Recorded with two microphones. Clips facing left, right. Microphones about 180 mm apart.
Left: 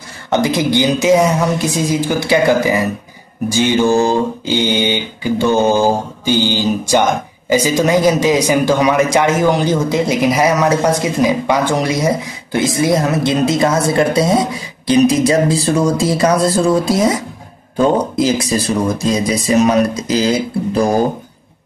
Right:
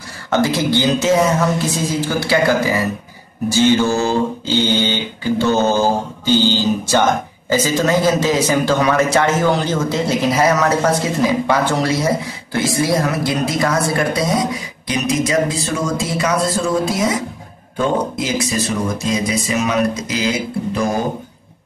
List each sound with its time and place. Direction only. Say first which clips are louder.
0.3 s mantra: left 2 dB; 15° left (ahead or behind)
12.5 s speech: left 3 dB; 20° left (ahead or behind); by 21.0 s 35° left (ahead or behind)